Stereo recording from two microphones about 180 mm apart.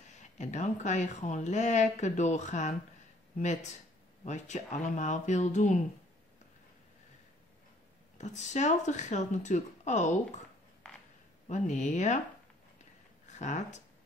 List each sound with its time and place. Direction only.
0.4 s speech: 40° left (ahead or behind)
4.2 s speech: 40° left (ahead or behind)
8.2 s speech: 40° left (ahead or behind)
11.4 s speech: 40° left (ahead or behind)
13.4 s speech: 40° left (ahead or behind)